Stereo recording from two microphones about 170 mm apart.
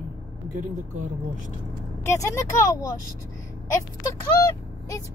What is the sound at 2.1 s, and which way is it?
Speech, 15° left (ahead or behind).